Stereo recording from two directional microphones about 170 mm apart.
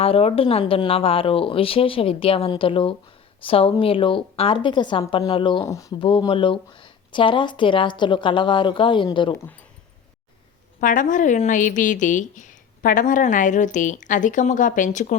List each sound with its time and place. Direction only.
0.0 s speech: 35° left (ahead or behind)
5.6 s speech: 20° left (ahead or behind)
6.0 s speech: 30° left (ahead or behind)
10.8 s a woman's voice: 50° left (ahead or behind)